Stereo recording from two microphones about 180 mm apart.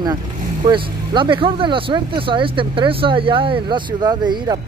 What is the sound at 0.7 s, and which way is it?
Speech, 25° right (ahead or behind).